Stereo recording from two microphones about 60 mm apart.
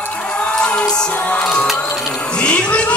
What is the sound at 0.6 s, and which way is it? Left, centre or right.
Music, centre.